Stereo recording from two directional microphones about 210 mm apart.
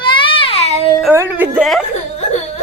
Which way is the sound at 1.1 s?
10° right (ahead or behind).